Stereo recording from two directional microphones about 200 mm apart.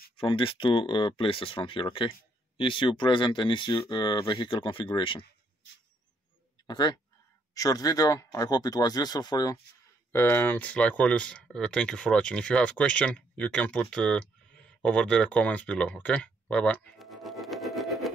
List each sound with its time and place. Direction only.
0.2 s speech: 25° left (ahead or behind)
6.7 s speech: 20° left (ahead or behind); by 14.2 s 5° left (ahead or behind)
14.8 s a sound: 5° left (ahead or behind)